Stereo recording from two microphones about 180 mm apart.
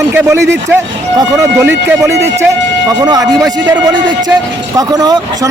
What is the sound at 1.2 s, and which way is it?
Speech, 15° right (ahead or behind).